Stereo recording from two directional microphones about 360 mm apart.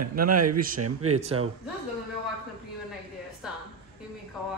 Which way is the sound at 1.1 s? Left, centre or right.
Centre.